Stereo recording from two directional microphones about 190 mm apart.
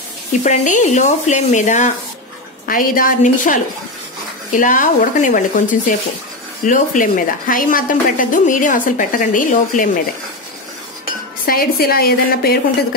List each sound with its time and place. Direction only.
0.4 s a woman's voice: 40° left (ahead or behind)
11.4 s a woman's voice: 50° left (ahead or behind)